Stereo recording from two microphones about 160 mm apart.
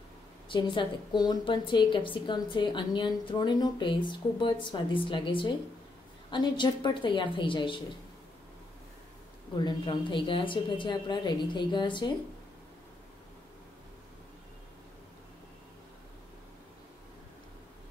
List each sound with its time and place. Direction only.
0.5 s a woman's voice: 30° left (ahead or behind)
9.6 s a woman's voice: 30° left (ahead or behind)